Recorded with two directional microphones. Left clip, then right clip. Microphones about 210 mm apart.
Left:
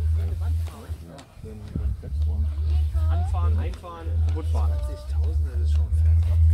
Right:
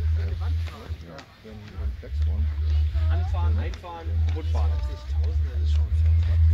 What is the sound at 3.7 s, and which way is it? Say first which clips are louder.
Speech: right 1 dB; 50° left (ahead or behind).